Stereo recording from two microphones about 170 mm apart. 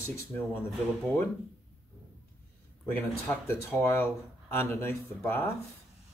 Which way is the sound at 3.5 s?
15° left (ahead or behind).